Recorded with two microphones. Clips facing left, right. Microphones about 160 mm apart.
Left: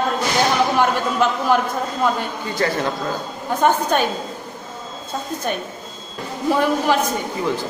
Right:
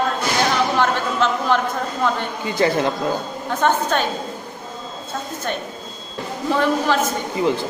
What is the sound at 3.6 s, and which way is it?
Speech, 10° left (ahead or behind).